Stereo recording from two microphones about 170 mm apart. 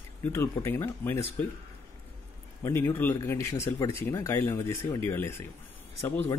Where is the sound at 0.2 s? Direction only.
15° left (ahead or behind).